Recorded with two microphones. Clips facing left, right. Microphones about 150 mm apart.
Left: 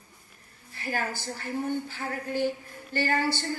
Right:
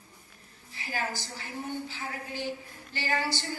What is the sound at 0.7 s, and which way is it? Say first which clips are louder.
Speech: left 3 dB; 50° left (ahead or behind).